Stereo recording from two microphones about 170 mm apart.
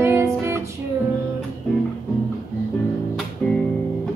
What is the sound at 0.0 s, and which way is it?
Music, 15° right (ahead or behind).